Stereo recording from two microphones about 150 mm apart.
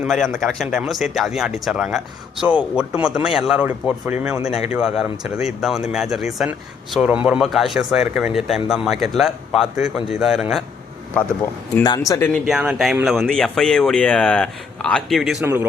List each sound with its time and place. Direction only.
0.0 s speech: centre (ahead or behind)
11.8 s speech: 25° left (ahead or behind)
12.5 s speech: centre (ahead or behind)
15.4 s speech: 20° right (ahead or behind)